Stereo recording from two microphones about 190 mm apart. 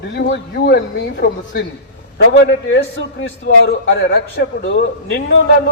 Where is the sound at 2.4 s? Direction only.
85° left.